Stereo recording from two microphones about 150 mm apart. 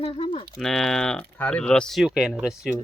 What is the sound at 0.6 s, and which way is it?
Speech, 5° left (ahead or behind).